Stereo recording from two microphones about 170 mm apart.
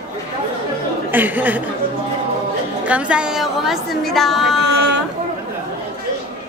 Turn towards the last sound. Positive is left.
turn(degrees=0)  # may be behind; listen again after turning